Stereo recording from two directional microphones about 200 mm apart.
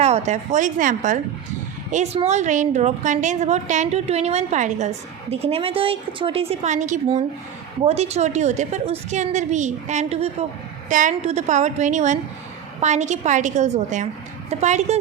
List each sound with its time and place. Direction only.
0.0 s a woman's voice: 35° right (ahead or behind)